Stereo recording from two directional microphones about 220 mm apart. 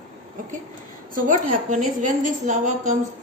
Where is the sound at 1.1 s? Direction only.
35° right (ahead or behind).